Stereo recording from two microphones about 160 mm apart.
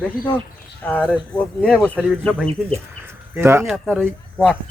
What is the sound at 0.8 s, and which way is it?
Speech, 5° left (ahead or behind).